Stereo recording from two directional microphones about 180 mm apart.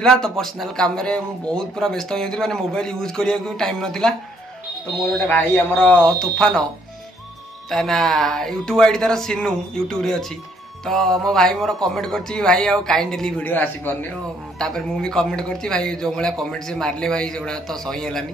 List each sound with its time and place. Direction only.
0.0 s a man's voice: 5° left (ahead or behind)
5.2 s a man's voice: 10° left (ahead or behind)
7.7 s a man's voice: centre (ahead or behind)